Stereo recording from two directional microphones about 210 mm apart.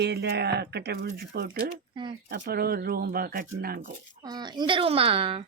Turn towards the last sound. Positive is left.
turn(degrees=-25)  # may be behind; listen again after turning